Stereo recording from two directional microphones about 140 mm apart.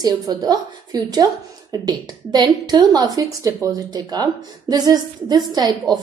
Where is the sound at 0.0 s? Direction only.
30° right (ahead or behind).